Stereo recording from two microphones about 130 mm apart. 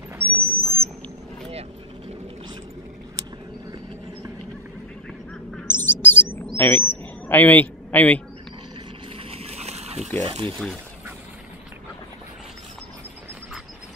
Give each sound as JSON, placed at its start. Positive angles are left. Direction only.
{"t": 0.2, "sound": "owl", "side_deg": -50}
{"t": 1.5, "sound": "vehicle", "side_deg": -50}
{"t": 5.3, "sound": "duck", "side_deg": 5}
{"t": 5.7, "sound": "bird", "side_deg": 15}
{"t": 6.5, "sound": "a sound", "side_deg": 15}
{"t": 7.2, "sound": "a man's voice", "side_deg": 15}
{"t": 9.3, "sound": "a sound", "side_deg": -50}
{"t": 10.2, "sound": "speech", "side_deg": -40}